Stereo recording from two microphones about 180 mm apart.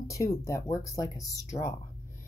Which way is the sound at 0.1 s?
15° left (ahead or behind).